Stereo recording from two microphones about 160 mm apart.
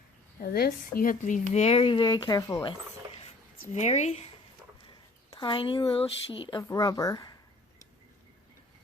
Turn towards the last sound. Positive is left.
turn(degrees=25)  # may be behind; listen again after turning